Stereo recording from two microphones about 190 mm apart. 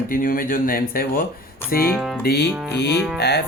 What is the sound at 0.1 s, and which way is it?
Speech, 50° left (ahead or behind).